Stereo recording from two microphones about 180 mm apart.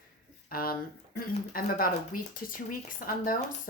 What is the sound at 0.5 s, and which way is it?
Speech, 55° left (ahead or behind).